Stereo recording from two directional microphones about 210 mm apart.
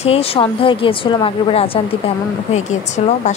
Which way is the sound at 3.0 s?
30° left (ahead or behind).